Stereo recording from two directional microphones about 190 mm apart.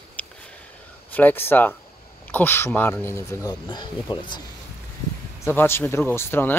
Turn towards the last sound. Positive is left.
turn(degrees=10)  # may be behind; listen again after turning